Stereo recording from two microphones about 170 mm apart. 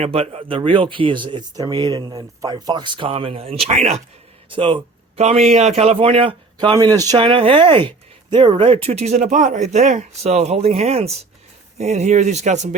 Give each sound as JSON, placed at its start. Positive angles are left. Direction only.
{"t": 0.0, "sound": "speech", "side_deg": -35}
{"t": 6.7, "sound": "speech", "side_deg": -20}